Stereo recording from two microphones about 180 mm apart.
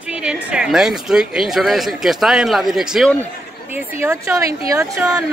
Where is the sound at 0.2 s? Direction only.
5° right (ahead or behind).